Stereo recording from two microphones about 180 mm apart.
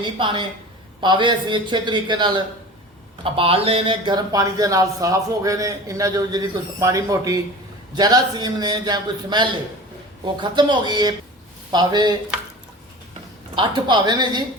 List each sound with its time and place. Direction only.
0.0 s speech: 25° right (ahead or behind)
13.6 s speech: 25° right (ahead or behind)